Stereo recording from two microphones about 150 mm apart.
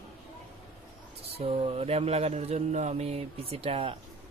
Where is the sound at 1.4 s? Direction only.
40° right (ahead or behind).